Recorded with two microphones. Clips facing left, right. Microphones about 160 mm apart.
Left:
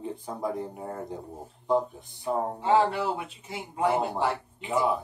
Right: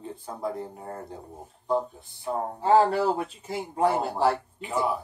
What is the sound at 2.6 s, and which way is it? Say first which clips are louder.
A man's voice: right 4 dB; 40° right (ahead or behind).